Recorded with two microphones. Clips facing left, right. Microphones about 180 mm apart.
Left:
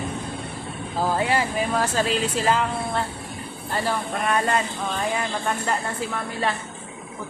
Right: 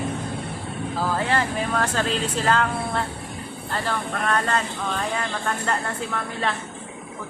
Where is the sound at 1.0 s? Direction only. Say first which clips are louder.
Left 2 dB; 10° left (ahead or behind).